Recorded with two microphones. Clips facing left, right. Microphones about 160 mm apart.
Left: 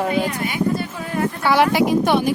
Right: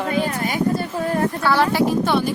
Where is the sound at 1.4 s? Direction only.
15° left (ahead or behind).